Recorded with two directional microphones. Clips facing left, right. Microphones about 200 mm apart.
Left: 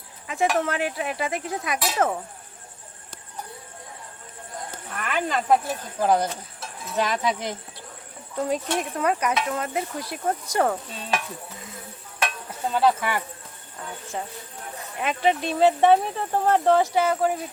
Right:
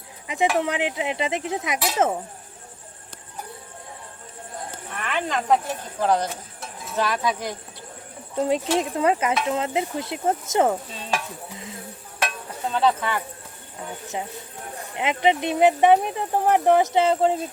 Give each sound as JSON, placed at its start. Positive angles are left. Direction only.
{"t": 0.3, "sound": "speech", "side_deg": -15}
{"t": 0.6, "sound": "a sound", "side_deg": -15}
{"t": 4.9, "sound": "speech", "side_deg": 5}
{"t": 8.4, "sound": "a sound", "side_deg": -20}
{"t": 10.9, "sound": "speech", "side_deg": 0}
{"t": 12.6, "sound": "speech", "side_deg": 5}
{"t": 14.9, "sound": "speech", "side_deg": -20}